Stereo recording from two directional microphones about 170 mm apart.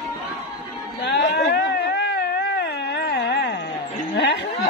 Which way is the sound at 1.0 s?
85° left.